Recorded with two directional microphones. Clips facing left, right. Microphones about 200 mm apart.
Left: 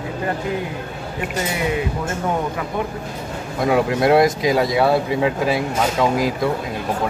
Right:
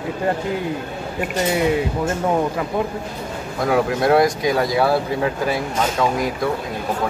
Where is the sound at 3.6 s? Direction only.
Centre (ahead or behind).